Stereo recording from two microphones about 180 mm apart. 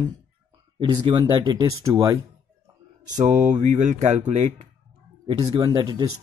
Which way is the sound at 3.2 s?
40° right (ahead or behind).